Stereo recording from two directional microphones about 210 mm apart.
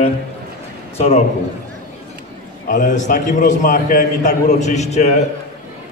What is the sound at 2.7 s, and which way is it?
A man's voice, 35° left (ahead or behind).